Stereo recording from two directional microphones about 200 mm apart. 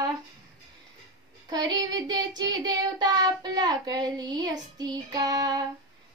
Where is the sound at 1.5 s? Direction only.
20° right (ahead or behind).